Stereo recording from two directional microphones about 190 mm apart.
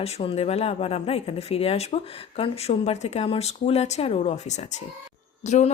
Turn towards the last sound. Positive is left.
turn(degrees=35)  # may be behind; listen again after turning